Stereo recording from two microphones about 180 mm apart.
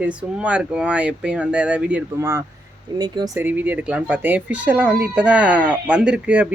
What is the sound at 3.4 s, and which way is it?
Speech, 10° right (ahead or behind).